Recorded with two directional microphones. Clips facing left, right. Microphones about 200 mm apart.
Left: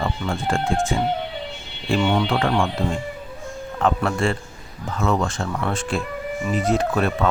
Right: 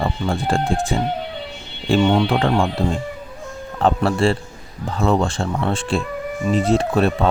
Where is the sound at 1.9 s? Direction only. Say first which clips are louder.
Right 4 dB; 25° right (ahead or behind).